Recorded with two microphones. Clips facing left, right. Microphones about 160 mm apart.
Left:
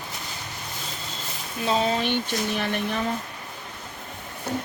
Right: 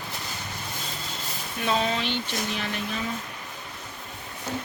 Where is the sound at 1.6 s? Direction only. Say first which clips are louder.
Left 2 dB; 30° left (ahead or behind).